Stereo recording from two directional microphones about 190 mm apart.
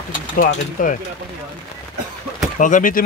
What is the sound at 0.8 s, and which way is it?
Speech, 45° left (ahead or behind).